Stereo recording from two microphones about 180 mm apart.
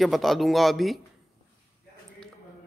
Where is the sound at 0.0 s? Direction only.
Centre (ahead or behind).